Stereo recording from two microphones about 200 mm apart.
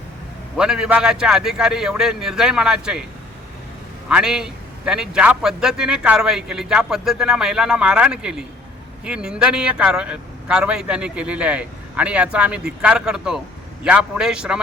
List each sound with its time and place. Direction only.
0.5 s a man's voice: 5° right (ahead or behind)
4.1 s a man's voice: 5° right (ahead or behind)